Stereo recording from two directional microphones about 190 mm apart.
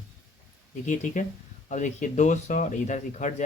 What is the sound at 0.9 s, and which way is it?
Speech, 40° left (ahead or behind).